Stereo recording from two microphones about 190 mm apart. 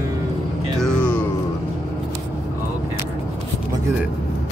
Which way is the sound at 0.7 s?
5° left (ahead or behind).